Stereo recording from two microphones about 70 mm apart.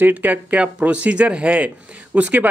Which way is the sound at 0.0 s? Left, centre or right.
Right.